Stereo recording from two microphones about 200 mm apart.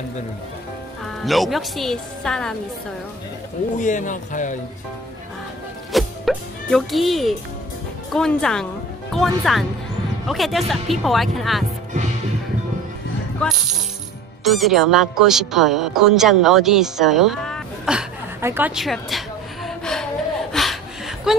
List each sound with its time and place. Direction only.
1.2 s a woman's voice: centre (ahead or behind)
3.7 s speech: 40° left (ahead or behind)
5.9 s music: centre (ahead or behind)
8.1 s a woman's voice: 5° left (ahead or behind)
13.4 s a woman's voice: 5° left (ahead or behind); by 18.7 s 10° right (ahead or behind)
18.8 s a sound: centre (ahead or behind)